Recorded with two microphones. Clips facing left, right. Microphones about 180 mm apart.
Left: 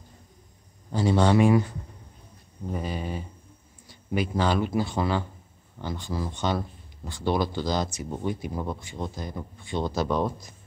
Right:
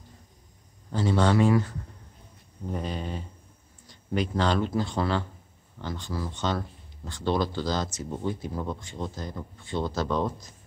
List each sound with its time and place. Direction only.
0.9 s speech: 15° left (ahead or behind)